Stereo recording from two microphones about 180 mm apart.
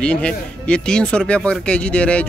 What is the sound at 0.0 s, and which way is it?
Speech, 5° left (ahead or behind).